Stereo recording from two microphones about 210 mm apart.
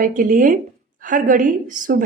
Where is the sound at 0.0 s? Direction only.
40° right (ahead or behind).